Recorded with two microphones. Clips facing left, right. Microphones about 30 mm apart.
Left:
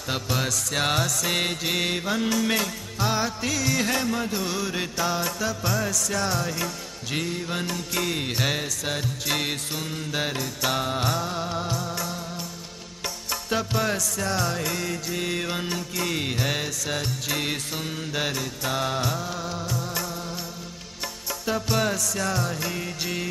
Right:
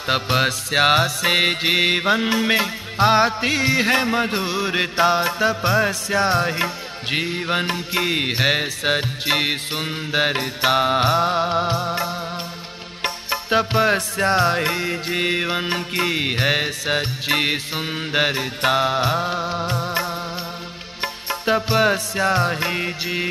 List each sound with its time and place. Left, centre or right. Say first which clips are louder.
0.0 s music: right 8 dB; right